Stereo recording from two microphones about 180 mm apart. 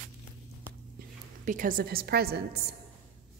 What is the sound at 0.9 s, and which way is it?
A woman's voice, 45° right (ahead or behind).